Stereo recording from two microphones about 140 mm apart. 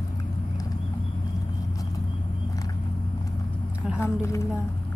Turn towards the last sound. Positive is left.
turn(degrees=20)  # may be behind; listen again after turning